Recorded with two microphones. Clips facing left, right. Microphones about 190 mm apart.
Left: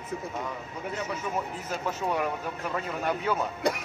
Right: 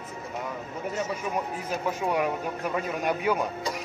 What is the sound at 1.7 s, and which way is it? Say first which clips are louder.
Speech: right 2 dB; 10° right (ahead or behind).